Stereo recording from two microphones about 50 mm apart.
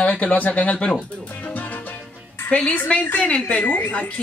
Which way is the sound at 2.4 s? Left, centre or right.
Left.